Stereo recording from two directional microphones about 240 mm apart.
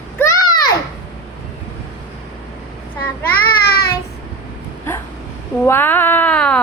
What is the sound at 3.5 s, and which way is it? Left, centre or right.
Child singing, left.